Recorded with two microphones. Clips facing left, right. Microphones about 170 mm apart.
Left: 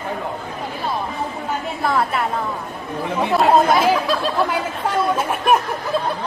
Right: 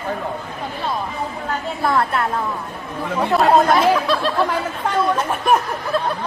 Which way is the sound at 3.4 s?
5° left (ahead or behind).